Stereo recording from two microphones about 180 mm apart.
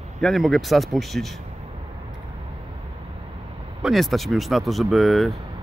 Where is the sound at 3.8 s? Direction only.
Centre (ahead or behind).